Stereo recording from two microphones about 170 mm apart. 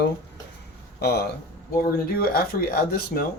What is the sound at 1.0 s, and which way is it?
Speech, 75° left (ahead or behind).